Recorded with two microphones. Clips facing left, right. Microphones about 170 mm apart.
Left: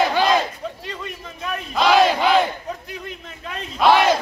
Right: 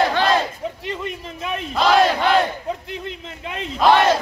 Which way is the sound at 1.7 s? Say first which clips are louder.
Even; centre (ahead or behind).